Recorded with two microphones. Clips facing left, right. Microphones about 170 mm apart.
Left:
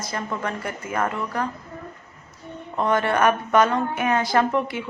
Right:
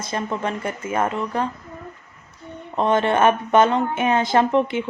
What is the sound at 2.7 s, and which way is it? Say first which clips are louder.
A woman's voice: right 3 dB; 20° right (ahead or behind).